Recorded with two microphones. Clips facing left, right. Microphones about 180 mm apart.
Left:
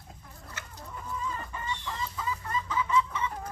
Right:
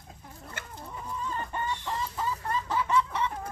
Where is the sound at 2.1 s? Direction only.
65° right (ahead or behind).